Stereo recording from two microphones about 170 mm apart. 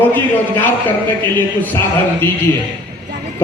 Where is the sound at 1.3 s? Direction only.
10° left (ahead or behind).